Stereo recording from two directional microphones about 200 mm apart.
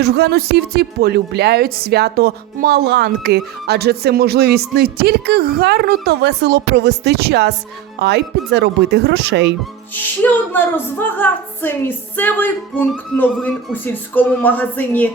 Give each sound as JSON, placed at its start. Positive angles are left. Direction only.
{"t": 0.0, "sound": "speech", "side_deg": -55}
{"t": 10.5, "sound": "music", "side_deg": 10}